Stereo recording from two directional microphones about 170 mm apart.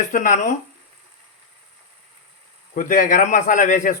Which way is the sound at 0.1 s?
45° left (ahead or behind).